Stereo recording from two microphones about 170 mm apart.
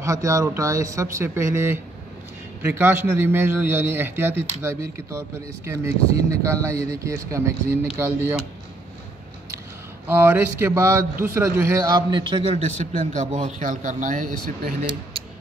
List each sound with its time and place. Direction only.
0.0 s a man's voice: 20° right (ahead or behind)
10.0 s a man's voice: 10° right (ahead or behind); by 12.5 s 30° right (ahead or behind)
13.0 s speech: 45° right (ahead or behind)